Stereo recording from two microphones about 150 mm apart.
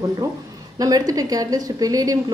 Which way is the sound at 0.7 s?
25° right (ahead or behind).